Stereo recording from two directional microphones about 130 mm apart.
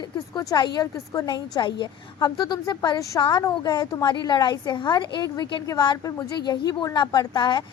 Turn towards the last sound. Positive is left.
turn(degrees=35)  # may be behind; listen again after turning